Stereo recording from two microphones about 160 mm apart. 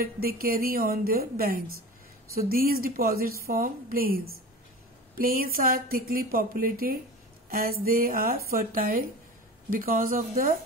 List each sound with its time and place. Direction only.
0.0 s speech: 65° right (ahead or behind)